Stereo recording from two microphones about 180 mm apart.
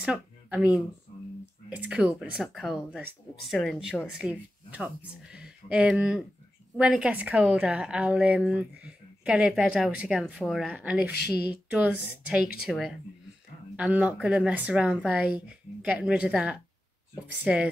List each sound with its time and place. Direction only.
0.0 s a woman's voice: 5° right (ahead or behind)
12.3 s a woman's voice: centre (ahead or behind)